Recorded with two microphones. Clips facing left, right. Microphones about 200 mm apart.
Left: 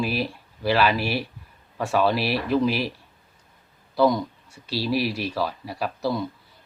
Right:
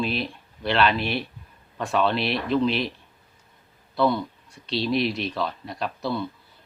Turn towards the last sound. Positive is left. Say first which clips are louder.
# left 2 dB
turn(degrees=10)  # may be behind; listen again after turning